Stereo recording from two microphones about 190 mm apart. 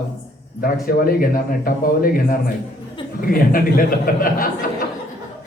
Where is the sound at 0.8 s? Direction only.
50° left (ahead or behind).